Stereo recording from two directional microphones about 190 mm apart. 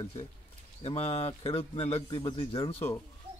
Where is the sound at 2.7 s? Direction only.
10° left (ahead or behind).